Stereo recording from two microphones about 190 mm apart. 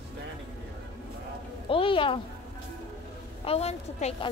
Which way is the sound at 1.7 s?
25° left (ahead or behind).